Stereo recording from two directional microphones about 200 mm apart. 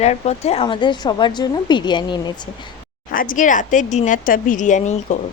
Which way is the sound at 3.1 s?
40° left (ahead or behind).